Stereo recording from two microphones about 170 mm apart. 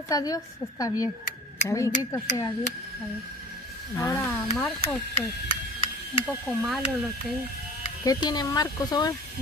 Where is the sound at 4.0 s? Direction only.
15° left (ahead or behind).